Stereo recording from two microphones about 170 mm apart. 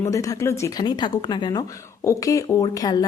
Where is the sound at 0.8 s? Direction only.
25° left (ahead or behind).